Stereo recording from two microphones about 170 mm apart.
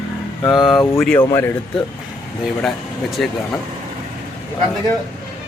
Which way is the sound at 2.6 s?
Centre (ahead or behind).